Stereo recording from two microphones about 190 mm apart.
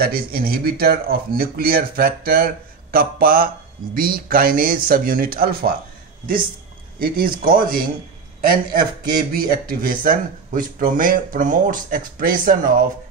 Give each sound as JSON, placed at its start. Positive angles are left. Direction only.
{"t": 0.0, "sound": "speech", "side_deg": -50}
{"t": 7.0, "sound": "a man's voice", "side_deg": -50}